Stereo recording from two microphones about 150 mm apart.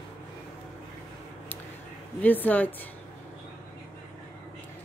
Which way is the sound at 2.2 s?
10° left (ahead or behind).